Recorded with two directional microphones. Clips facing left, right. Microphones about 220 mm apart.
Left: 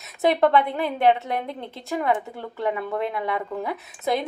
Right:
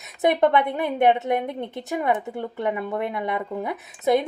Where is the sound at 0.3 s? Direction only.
20° right (ahead or behind).